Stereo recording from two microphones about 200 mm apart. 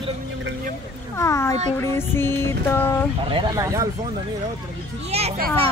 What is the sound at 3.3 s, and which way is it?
Speech, 20° right (ahead or behind).